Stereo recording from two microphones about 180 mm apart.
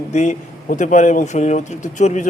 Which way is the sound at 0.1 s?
40° left (ahead or behind).